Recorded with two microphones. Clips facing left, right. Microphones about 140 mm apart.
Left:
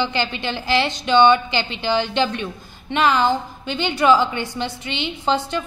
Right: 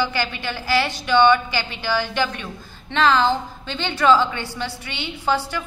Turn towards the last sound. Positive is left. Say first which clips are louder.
# left 2 dB
turn(degrees=20)  # may be behind; listen again after turning